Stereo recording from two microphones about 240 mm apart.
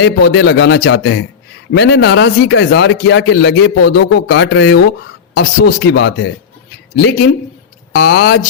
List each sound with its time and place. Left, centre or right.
0.0 s speech: left